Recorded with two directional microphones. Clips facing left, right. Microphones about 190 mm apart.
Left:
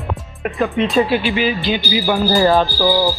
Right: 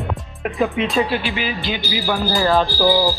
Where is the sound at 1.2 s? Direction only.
20° left (ahead or behind).